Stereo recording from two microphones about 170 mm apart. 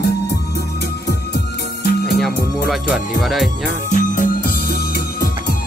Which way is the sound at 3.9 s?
55° left (ahead or behind).